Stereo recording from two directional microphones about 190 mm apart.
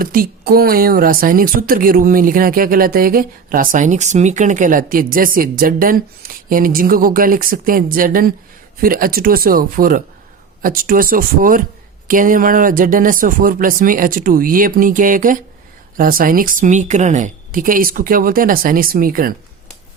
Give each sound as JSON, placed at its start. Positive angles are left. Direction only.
{"t": 0.0, "sound": "speech", "side_deg": -50}